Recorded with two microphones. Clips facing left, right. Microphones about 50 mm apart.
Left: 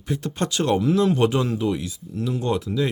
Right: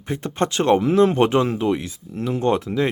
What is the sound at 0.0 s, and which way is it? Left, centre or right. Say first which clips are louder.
Speech: right 3 dB; right.